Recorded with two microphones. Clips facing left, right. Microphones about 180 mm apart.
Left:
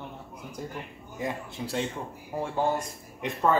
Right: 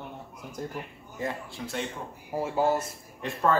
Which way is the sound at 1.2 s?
15° left (ahead or behind).